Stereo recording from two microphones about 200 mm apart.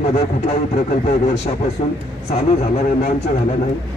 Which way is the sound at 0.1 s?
30° left (ahead or behind).